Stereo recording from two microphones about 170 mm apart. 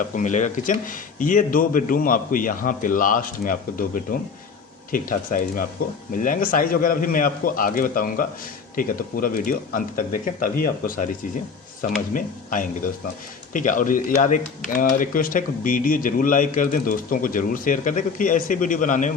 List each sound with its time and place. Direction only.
0.1 s speech: 45° left (ahead or behind)